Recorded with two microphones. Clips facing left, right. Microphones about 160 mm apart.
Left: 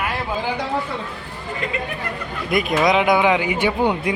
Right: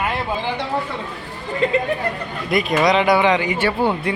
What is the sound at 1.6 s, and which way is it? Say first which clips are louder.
Speech: right 9 dB; 30° right (ahead or behind).